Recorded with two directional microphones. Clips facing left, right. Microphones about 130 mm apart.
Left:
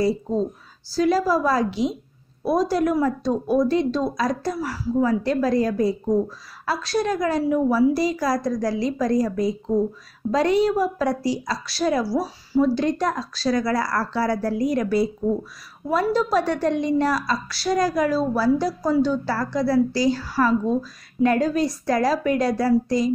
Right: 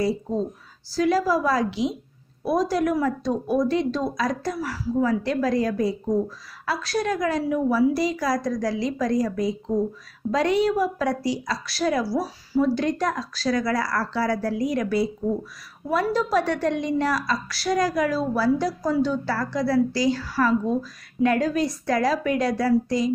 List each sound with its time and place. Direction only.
0.9 s a woman's voice: 35° left (ahead or behind)